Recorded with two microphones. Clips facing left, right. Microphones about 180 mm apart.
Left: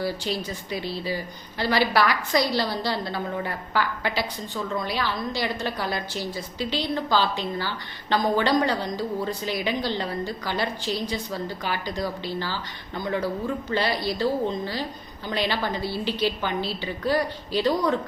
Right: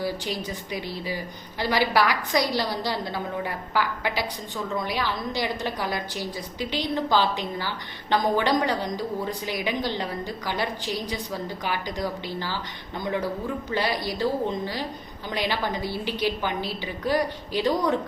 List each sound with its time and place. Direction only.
0.0 s a woman's voice: 15° right (ahead or behind)
13.7 s a woman's voice: 15° right (ahead or behind)